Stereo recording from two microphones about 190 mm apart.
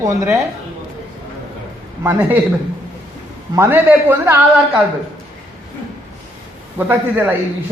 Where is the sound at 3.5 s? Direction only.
10° right (ahead or behind).